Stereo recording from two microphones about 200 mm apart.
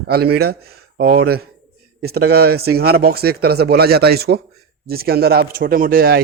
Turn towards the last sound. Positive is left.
turn(degrees=-50)  # may be behind; listen again after turning